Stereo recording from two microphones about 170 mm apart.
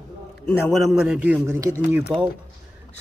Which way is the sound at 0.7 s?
Centre (ahead or behind).